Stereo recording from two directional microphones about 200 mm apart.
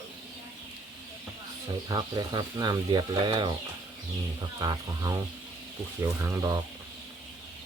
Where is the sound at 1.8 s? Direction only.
20° right (ahead or behind).